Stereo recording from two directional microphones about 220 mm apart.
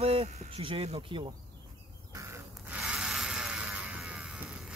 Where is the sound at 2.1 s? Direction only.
10° right (ahead or behind).